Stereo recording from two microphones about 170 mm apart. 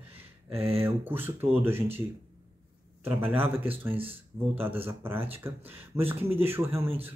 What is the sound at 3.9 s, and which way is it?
Speech, 35° right (ahead or behind).